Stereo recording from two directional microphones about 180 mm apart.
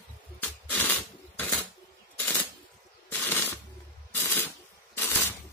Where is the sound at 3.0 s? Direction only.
10° left (ahead or behind).